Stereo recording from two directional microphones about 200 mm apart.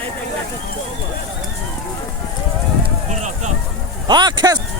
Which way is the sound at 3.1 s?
35° right (ahead or behind).